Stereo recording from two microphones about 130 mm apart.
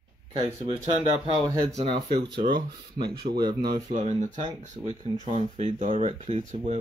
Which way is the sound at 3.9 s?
70° right (ahead or behind).